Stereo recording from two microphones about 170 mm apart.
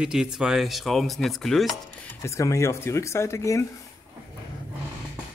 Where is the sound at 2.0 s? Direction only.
15° left (ahead or behind).